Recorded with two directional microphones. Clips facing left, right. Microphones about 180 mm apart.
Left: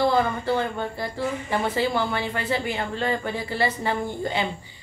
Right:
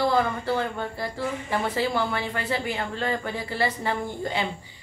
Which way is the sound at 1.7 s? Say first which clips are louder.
Left 1 dB; centre (ahead or behind).